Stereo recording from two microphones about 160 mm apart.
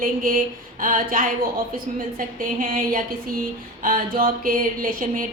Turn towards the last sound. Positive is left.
turn(degrees=-60)  # may be behind; listen again after turning